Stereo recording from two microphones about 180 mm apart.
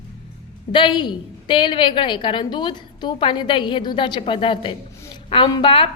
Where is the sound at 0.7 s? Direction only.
25° left (ahead or behind).